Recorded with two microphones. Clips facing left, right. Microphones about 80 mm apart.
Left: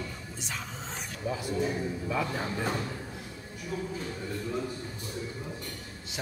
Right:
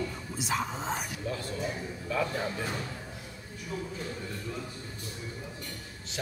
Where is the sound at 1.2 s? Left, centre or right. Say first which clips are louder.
Left 7 dB; centre.